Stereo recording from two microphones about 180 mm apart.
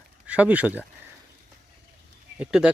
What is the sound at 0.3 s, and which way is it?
Speech, 10° right (ahead or behind).